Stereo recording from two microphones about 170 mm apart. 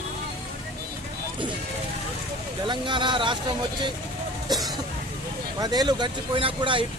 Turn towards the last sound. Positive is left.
turn(degrees=-30)  # may be behind; listen again after turning